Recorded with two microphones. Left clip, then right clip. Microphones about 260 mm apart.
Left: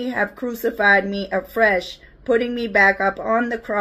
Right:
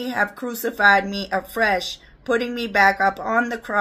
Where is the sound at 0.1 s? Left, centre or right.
Centre.